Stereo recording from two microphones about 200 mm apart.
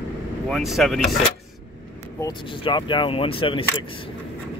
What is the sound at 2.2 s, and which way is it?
Speech, 20° left (ahead or behind).